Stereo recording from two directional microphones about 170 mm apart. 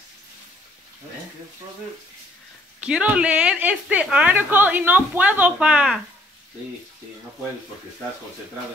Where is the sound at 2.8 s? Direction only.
5° right (ahead or behind).